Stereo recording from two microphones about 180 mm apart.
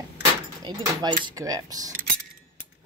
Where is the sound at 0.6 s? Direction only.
25° right (ahead or behind).